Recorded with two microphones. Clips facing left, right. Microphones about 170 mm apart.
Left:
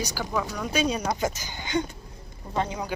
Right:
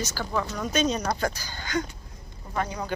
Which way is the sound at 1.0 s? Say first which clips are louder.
Even; 20° left (ahead or behind).